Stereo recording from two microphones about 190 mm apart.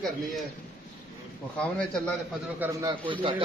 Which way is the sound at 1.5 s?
5° left (ahead or behind).